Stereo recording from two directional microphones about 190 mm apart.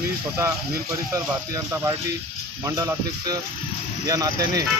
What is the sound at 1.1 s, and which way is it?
Speech, 15° right (ahead or behind).